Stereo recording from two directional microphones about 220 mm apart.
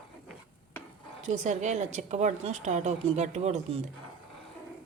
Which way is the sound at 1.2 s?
35° right (ahead or behind).